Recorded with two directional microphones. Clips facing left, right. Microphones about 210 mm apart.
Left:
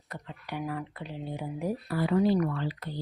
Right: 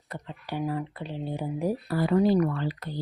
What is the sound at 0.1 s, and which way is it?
A woman's voice, 30° right (ahead or behind).